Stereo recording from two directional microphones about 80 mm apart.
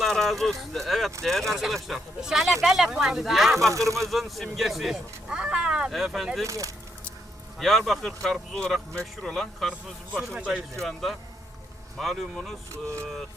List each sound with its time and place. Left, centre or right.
0.1 s speech: centre
3.7 s speech: right
4.0 s speech: centre
6.4 s speech: right
7.6 s speech: centre
10.3 s speech: centre
10.8 s speech: centre